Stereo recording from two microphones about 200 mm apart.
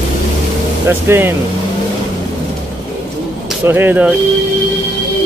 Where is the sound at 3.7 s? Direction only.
10° right (ahead or behind).